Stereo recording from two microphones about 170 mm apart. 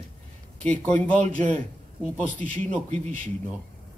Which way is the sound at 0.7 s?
5° left (ahead or behind).